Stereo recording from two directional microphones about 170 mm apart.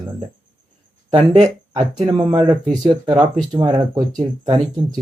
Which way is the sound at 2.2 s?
25° right (ahead or behind).